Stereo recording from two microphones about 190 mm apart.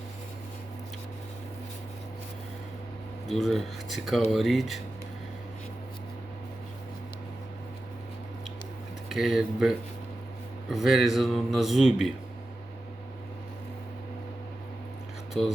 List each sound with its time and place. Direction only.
3.2 s speech: centre (ahead or behind)
9.0 s speech: centre (ahead or behind)
15.3 s speech: centre (ahead or behind)